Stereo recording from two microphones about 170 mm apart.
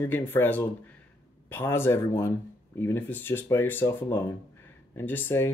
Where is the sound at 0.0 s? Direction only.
10° left (ahead or behind).